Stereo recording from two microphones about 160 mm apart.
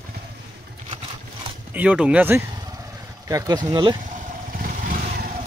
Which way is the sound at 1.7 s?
10° right (ahead or behind).